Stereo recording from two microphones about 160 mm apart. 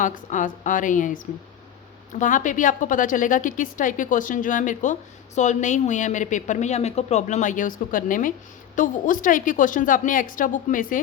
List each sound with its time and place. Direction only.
0.0 s a woman's voice: 55° left (ahead or behind)